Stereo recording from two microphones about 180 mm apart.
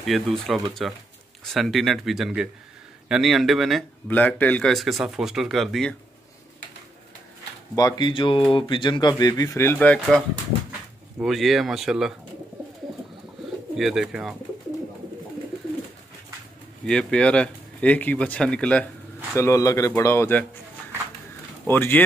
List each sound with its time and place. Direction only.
0.0 s speech: centre (ahead or behind)
7.7 s speech: 25° left (ahead or behind)
11.1 s speech: centre (ahead or behind)
13.7 s speech: centre (ahead or behind)
16.8 s speech: 5° left (ahead or behind)
19.3 s a man's voice: 15° left (ahead or behind)
21.6 s a man's voice: 10° left (ahead or behind)